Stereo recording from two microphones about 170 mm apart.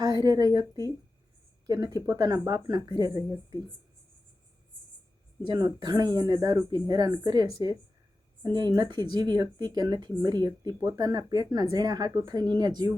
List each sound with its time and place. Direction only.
0.0 s a woman's voice: 20° right (ahead or behind)
5.4 s speech: 25° right (ahead or behind)